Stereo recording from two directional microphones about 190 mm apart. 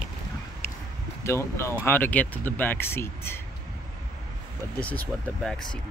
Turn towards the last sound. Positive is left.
turn(degrees=0)  # may be behind; listen again after turning